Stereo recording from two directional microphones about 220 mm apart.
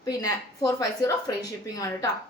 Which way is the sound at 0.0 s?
15° left (ahead or behind).